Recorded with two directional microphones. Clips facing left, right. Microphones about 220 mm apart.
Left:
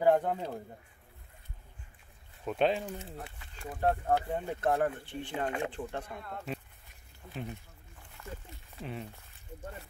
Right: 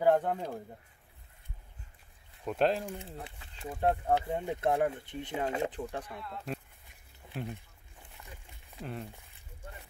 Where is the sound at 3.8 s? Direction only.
10° right (ahead or behind).